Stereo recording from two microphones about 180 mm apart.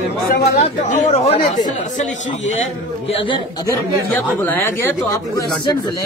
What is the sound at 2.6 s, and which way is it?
Speech, 35° left (ahead or behind).